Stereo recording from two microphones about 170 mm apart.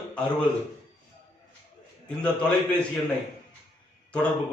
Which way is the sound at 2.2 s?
5° left (ahead or behind).